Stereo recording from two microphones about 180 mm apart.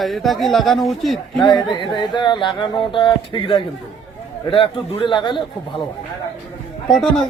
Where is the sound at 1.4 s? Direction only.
25° left (ahead or behind).